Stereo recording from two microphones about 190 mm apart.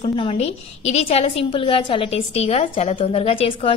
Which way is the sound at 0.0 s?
25° left (ahead or behind).